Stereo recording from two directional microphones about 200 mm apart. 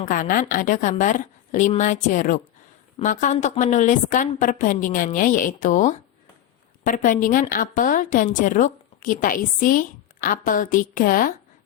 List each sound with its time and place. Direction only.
0.0 s a woman's voice: 45° left (ahead or behind)